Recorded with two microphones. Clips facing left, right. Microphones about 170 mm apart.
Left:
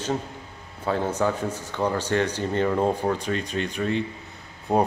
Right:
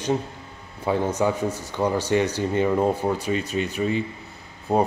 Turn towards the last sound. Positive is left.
turn(degrees=0)  # may be behind; listen again after turning